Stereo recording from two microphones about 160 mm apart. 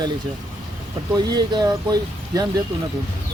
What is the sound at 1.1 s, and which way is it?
Speech, 25° right (ahead or behind).